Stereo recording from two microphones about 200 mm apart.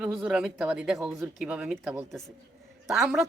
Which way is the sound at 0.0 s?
5° right (ahead or behind).